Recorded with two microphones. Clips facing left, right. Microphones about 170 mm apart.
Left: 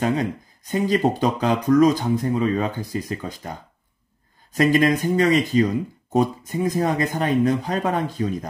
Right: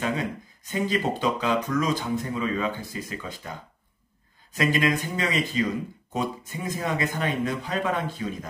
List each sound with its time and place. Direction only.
0.7 s speech: 45° left (ahead or behind)
4.6 s speech: 45° left (ahead or behind)